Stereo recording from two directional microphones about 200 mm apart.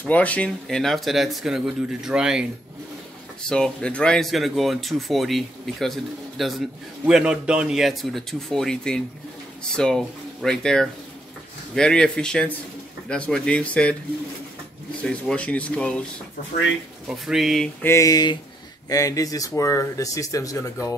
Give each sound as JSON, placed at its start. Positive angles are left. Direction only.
{"t": 0.0, "sound": "speech", "side_deg": 5}
{"t": 3.4, "sound": "speech", "side_deg": 5}
{"t": 15.0, "sound": "speech", "side_deg": 5}
{"t": 17.1, "sound": "speech", "side_deg": 0}
{"t": 17.8, "sound": "speech", "side_deg": 15}